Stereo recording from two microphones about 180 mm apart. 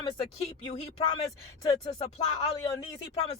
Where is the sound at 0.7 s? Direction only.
30° left (ahead or behind).